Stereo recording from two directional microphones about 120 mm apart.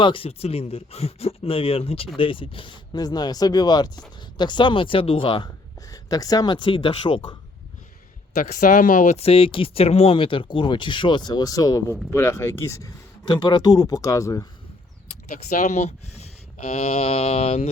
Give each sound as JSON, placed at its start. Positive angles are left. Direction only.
{"t": 0.0, "sound": "speech", "side_deg": 45}
{"t": 5.9, "sound": "speech", "side_deg": 30}
{"t": 8.4, "sound": "speech", "side_deg": 90}
{"t": 9.2, "sound": "speech", "side_deg": 50}
{"t": 13.2, "sound": "speech", "side_deg": 40}
{"t": 15.4, "sound": "speech", "side_deg": 85}